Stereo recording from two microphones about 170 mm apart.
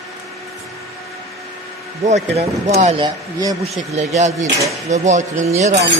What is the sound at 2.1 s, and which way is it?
Speech, 40° right (ahead or behind).